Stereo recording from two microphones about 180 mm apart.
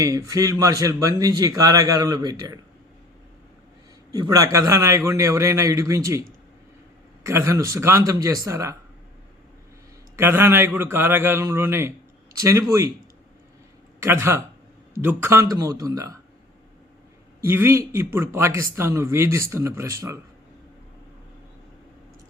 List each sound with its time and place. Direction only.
0.0 s speech: 20° right (ahead or behind)
4.1 s a man's voice: 20° right (ahead or behind)
7.3 s a man's voice: 15° right (ahead or behind)
10.2 s a man's voice: 15° right (ahead or behind)
14.0 s a man's voice: 15° right (ahead or behind)
17.4 s a man's voice: 15° right (ahead or behind)